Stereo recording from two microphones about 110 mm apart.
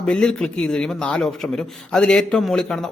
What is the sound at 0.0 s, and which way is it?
Speech, 5° left (ahead or behind).